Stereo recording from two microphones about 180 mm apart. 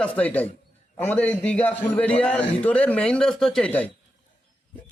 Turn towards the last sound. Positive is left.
turn(degrees=5)  # may be behind; listen again after turning